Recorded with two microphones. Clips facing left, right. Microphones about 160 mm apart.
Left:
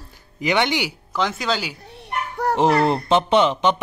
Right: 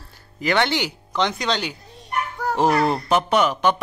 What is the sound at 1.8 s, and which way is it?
Children playing, 65° left (ahead or behind).